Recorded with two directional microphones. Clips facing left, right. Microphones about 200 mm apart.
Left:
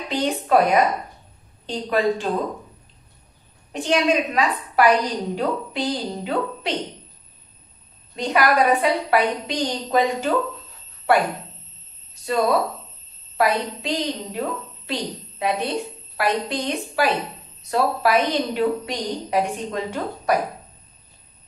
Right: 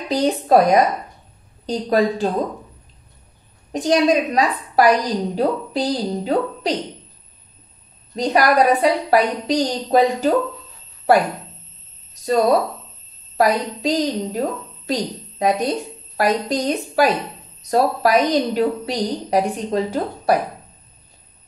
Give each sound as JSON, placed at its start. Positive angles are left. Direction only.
{"t": 0.1, "sound": "a woman's voice", "side_deg": -40}
{"t": 3.7, "sound": "a woman's voice", "side_deg": -40}
{"t": 8.2, "sound": "a woman's voice", "side_deg": -35}
{"t": 12.1, "sound": "a sound", "side_deg": -40}
{"t": 13.4, "sound": "a woman's voice", "side_deg": -40}